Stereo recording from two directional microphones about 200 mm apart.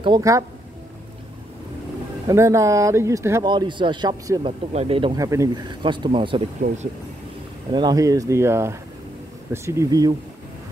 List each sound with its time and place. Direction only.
0.0 s speech: 20° right (ahead or behind)
2.2 s speech: 15° right (ahead or behind)
6.6 s speech: 50° right (ahead or behind)
7.7 s speech: 20° right (ahead or behind)